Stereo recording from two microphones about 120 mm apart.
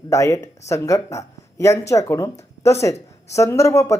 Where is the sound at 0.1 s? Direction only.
25° left (ahead or behind).